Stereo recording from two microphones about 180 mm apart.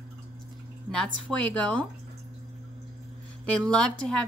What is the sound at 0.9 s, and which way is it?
Speech, 5° left (ahead or behind).